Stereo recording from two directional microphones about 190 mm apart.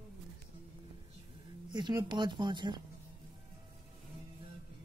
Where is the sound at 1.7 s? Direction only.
25° right (ahead or behind).